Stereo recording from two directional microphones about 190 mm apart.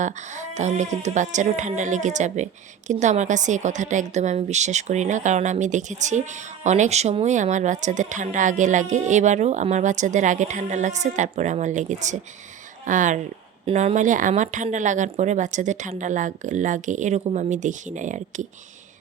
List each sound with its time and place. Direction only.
0.0 s speech: 40° right (ahead or behind)